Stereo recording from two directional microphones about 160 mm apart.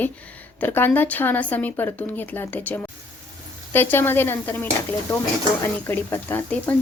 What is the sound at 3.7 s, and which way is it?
Speech, 15° left (ahead or behind).